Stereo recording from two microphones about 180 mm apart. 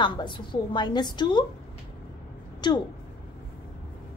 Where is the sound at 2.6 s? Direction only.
25° left (ahead or behind).